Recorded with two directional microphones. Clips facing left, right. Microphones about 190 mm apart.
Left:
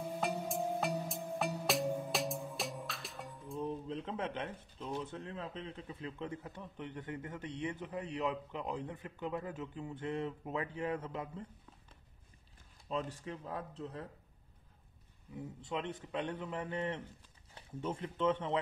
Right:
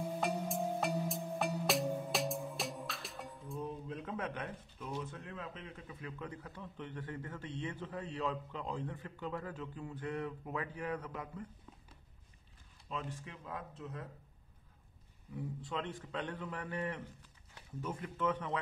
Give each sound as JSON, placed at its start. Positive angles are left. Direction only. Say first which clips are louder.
{"t": 0.2, "sound": "music", "louder": "left 1 dB", "side_deg": 0}
{"t": 3.5, "sound": "speech", "louder": "left 4 dB", "side_deg": 30}
{"t": 12.9, "sound": "speech", "louder": "left 5 dB", "side_deg": 35}
{"t": 15.3, "sound": "speech", "louder": "even", "side_deg": 20}